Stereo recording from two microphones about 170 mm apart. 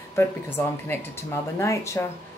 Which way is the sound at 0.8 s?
15° left (ahead or behind).